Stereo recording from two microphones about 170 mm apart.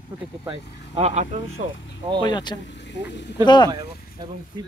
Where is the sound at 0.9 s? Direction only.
40° right (ahead or behind).